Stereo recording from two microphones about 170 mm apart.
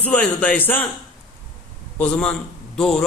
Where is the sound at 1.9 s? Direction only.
5° left (ahead or behind).